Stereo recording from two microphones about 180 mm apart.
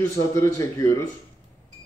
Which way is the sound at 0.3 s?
15° left (ahead or behind).